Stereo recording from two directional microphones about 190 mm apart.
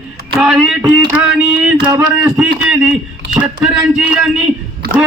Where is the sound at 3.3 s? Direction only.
5° right (ahead or behind).